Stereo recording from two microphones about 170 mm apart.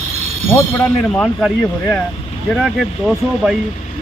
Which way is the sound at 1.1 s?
5° left (ahead or behind).